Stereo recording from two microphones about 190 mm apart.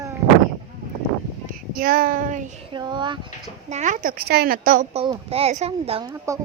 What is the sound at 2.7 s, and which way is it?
Speech, 25° right (ahead or behind).